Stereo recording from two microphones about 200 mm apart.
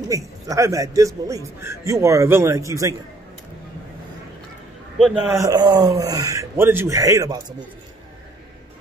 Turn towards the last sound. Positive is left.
turn(degrees=-15)  # may be behind; listen again after turning